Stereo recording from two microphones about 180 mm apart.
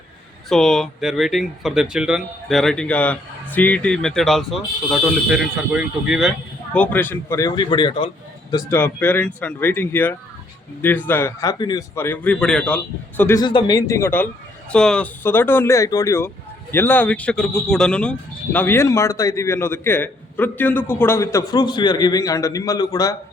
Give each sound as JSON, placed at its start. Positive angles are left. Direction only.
{"t": 0.4, "sound": "speech", "side_deg": 0}
{"t": 6.7, "sound": "a man's voice", "side_deg": 10}
{"t": 8.7, "sound": "speech", "side_deg": 10}
{"t": 13.4, "sound": "a man's voice", "side_deg": 25}